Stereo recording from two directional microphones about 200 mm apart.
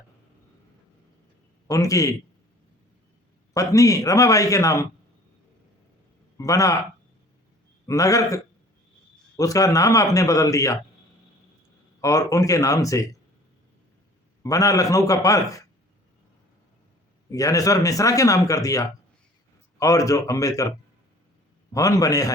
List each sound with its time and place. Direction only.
1.6 s speech: 15° left (ahead or behind)
3.5 s speech: 15° left (ahead or behind)
6.3 s a man's voice: 15° left (ahead or behind)
7.9 s speech: 15° left (ahead or behind)
9.4 s speech: 15° left (ahead or behind)
11.9 s speech: 15° left (ahead or behind)
14.4 s speech: 15° left (ahead or behind)
17.3 s speech: 15° left (ahead or behind)